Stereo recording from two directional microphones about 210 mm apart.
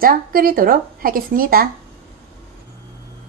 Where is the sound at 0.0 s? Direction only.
45° right (ahead or behind).